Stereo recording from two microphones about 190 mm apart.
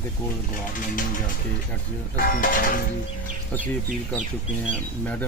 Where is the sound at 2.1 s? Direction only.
50° left (ahead or behind).